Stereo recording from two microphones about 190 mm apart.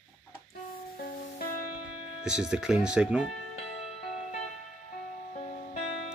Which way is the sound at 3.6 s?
35° left (ahead or behind).